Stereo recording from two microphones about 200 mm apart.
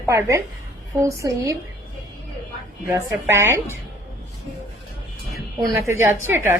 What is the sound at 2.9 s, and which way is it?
Speech, 10° right (ahead or behind).